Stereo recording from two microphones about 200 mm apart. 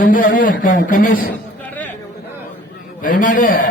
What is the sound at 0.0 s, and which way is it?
A man's voice, 40° left (ahead or behind).